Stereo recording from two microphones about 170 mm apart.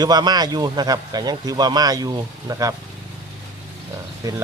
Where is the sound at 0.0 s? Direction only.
25° right (ahead or behind).